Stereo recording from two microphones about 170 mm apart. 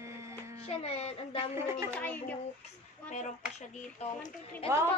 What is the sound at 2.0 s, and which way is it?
Speech, 10° left (ahead or behind).